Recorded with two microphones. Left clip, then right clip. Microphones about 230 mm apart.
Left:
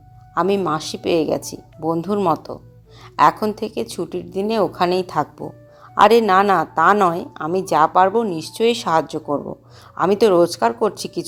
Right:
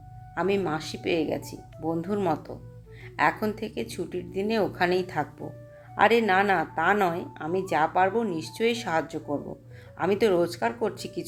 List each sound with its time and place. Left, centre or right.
0.3 s speech: left